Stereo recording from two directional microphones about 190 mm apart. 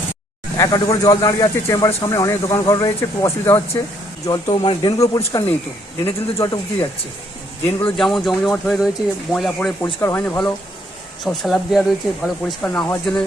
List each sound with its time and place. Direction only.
0.5 s speech: 20° left (ahead or behind)
7.9 s speech: centre (ahead or behind)